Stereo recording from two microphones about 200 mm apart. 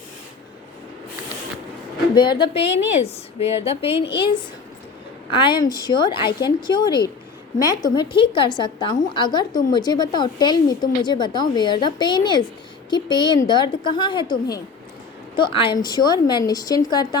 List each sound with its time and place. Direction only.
2.1 s speech: 20° left (ahead or behind)
5.3 s speech: 25° left (ahead or behind)